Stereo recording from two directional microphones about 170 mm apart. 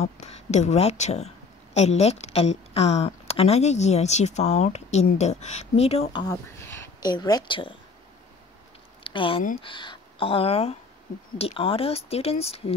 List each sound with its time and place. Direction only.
0.0 s speech: 40° left (ahead or behind)
6.2 s a woman's voice: 15° left (ahead or behind)
9.0 s speech: 30° left (ahead or behind)